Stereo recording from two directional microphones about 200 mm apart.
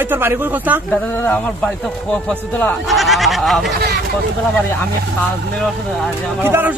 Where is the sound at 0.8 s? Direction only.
5° left (ahead or behind).